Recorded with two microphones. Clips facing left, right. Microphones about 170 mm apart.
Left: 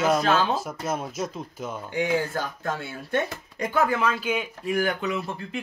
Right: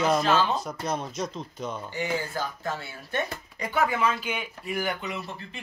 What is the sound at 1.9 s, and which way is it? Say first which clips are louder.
Speech: left 7 dB; 55° left (ahead or behind).